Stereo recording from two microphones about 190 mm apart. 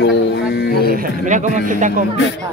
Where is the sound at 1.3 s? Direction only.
40° right (ahead or behind).